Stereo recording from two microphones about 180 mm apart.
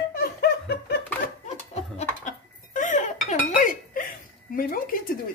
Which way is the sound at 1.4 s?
40° left (ahead or behind).